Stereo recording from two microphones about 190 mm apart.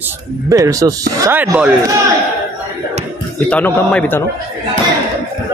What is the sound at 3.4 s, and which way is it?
Speech, 10° left (ahead or behind).